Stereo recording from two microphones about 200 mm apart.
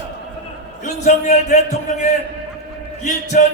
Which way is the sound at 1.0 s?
35° left (ahead or behind).